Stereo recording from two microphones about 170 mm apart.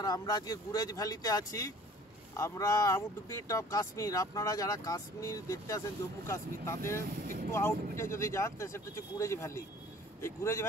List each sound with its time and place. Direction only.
0.0 s speech: 25° left (ahead or behind)
7.2 s vehicle: 60° right (ahead or behind)
7.5 s speech: 15° left (ahead or behind)